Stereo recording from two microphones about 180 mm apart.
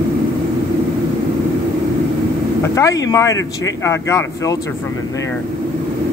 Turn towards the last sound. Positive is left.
turn(degrees=15)  # may be behind; listen again after turning